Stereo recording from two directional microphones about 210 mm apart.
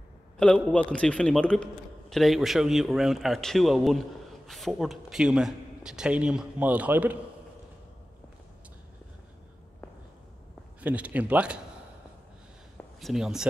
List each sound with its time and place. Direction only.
0.4 s a man's voice: 5° left (ahead or behind)
10.8 s a man's voice: 5° right (ahead or behind)
13.0 s a man's voice: centre (ahead or behind)